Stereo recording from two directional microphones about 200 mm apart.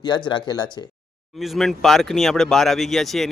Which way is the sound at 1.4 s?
Centre (ahead or behind).